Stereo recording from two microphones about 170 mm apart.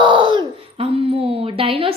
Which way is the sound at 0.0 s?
30° right (ahead or behind).